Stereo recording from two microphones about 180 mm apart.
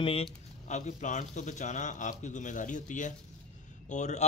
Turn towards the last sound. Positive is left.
turn(degrees=40)  # may be behind; listen again after turning